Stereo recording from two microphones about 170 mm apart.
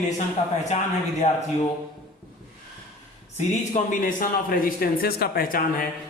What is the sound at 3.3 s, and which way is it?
A man's voice, 45° left (ahead or behind).